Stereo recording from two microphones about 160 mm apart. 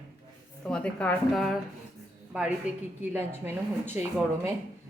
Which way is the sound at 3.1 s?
15° right (ahead or behind).